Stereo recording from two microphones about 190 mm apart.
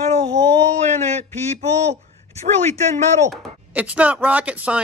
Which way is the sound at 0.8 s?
35° right (ahead or behind).